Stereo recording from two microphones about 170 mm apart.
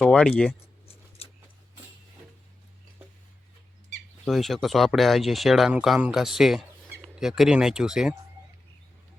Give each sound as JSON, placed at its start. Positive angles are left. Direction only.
{"t": 0.0, "sound": "speech", "side_deg": 5}
{"t": 0.9, "sound": "a sound", "side_deg": 35}
{"t": 4.3, "sound": "speech", "side_deg": 0}